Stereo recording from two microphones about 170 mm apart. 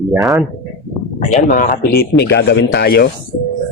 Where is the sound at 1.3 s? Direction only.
50° left (ahead or behind).